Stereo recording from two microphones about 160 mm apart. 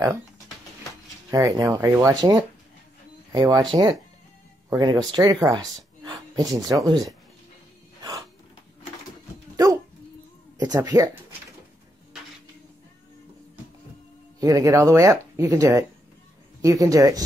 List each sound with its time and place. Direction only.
1.3 s speech: 20° right (ahead or behind)
8.0 s music: 20° right (ahead or behind)
10.6 s speech: 25° right (ahead or behind)
14.4 s speech: 20° right (ahead or behind)